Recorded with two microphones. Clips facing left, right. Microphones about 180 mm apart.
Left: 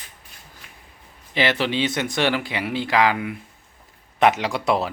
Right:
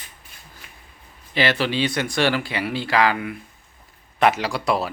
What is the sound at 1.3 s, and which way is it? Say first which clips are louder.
Speech: even; 20° left (ahead or behind).